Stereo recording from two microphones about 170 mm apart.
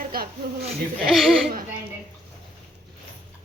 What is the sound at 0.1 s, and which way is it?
Laughter, 60° right (ahead or behind).